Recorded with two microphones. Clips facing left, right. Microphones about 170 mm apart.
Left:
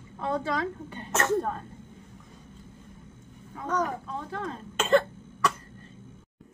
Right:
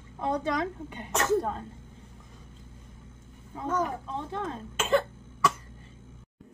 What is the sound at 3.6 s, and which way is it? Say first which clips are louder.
Speech: even; 5° right (ahead or behind).